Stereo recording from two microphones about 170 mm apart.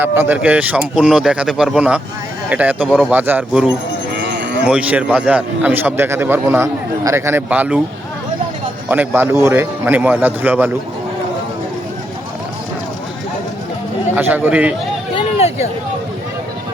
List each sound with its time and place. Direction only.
0.0 s a man's voice: 10° right (ahead or behind)
4.1 s a sound: 90° right
4.6 s a man's voice: 5° right (ahead or behind)
8.9 s a man's voice: 10° right (ahead or behind)
14.2 s a man's voice: 10° right (ahead or behind)
15.1 s a sound: 40° left (ahead or behind)